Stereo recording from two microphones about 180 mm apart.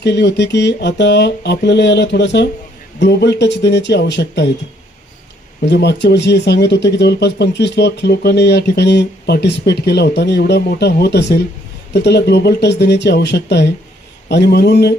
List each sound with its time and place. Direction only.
0.0 s speech: 75° left (ahead or behind)
5.6 s speech: 70° left (ahead or behind)